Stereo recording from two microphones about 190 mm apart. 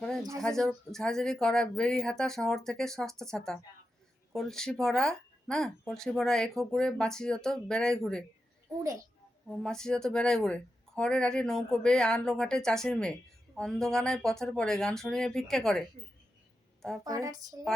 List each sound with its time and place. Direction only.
0.0 s a sound: centre (ahead or behind)
0.4 s speech: centre (ahead or behind)
8.8 s speech: 15° right (ahead or behind)
9.5 s speech: 5° left (ahead or behind)
17.0 s speech: 15° right (ahead or behind)